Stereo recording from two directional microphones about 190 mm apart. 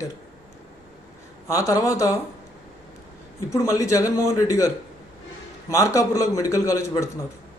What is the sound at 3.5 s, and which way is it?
Speech, 15° left (ahead or behind).